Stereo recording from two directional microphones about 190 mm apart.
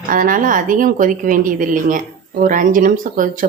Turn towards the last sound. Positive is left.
turn(degrees=-45)  # may be behind; listen again after turning